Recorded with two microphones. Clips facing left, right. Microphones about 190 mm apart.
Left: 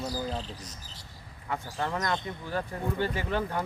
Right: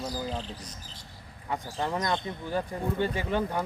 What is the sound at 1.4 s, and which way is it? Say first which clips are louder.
Speech: right 1 dB; 15° right (ahead or behind).